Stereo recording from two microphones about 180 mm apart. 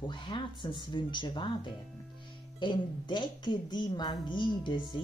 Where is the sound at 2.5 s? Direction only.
25° left (ahead or behind).